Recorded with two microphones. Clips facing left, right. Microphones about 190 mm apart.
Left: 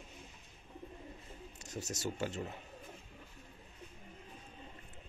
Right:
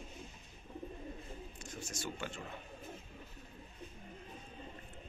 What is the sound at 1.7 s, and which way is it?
Speech, 40° left (ahead or behind).